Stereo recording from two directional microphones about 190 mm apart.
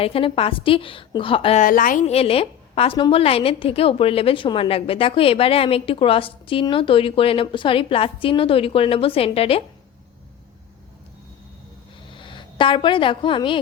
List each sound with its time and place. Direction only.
0.0 s a woman's voice: 30° left (ahead or behind)
1.6 s a woman's voice: 45° left (ahead or behind); by 9.6 s 30° left (ahead or behind)
12.1 s speech: 25° left (ahead or behind)